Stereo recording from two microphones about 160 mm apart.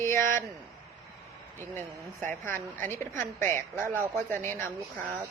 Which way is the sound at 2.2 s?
15° left (ahead or behind).